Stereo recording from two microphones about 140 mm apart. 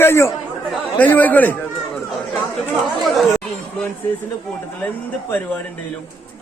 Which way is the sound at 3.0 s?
Centre (ahead or behind).